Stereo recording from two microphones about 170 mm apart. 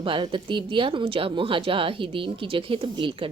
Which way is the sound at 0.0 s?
30° right (ahead or behind).